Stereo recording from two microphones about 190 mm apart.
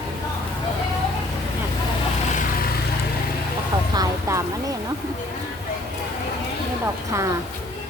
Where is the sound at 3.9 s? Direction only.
15° right (ahead or behind).